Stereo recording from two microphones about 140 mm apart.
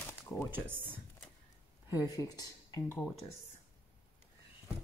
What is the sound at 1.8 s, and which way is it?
Speech, 25° left (ahead or behind).